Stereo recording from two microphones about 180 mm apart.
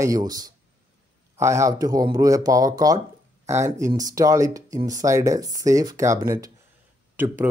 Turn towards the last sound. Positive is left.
turn(degrees=-10)  # may be behind; listen again after turning